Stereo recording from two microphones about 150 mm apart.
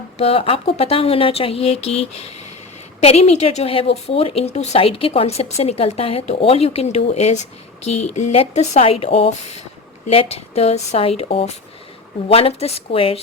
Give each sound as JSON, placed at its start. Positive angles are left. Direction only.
{"t": 0.2, "sound": "a woman's voice", "side_deg": 40}